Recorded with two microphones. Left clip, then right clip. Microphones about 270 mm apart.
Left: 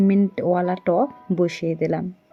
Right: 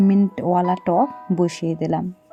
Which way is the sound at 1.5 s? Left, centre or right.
Right.